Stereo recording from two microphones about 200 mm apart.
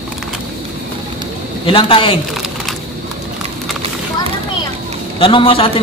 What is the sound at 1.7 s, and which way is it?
Speech, 25° left (ahead or behind).